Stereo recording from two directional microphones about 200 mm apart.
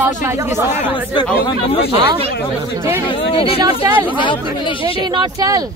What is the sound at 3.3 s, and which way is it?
Speech, 25° left (ahead or behind).